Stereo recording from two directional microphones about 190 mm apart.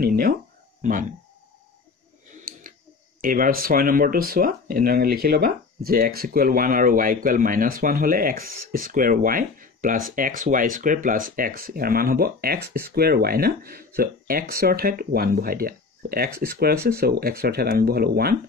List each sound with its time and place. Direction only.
0.0 s a sound: 55° right (ahead or behind)
2.3 s scissors: 45° right (ahead or behind)
3.2 s speech: 45° right (ahead or behind)